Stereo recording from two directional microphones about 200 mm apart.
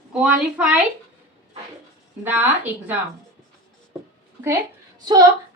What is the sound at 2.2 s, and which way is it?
Speech, 10° right (ahead or behind).